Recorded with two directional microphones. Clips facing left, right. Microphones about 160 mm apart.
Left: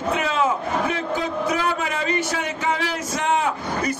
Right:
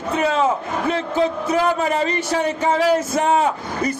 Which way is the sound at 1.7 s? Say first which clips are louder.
Right 4 dB; 35° right (ahead or behind).